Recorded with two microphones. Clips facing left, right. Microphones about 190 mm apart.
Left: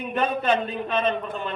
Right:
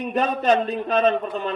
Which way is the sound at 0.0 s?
40° right (ahead or behind).